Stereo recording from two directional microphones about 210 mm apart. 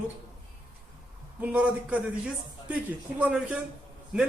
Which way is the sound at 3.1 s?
5° right (ahead or behind).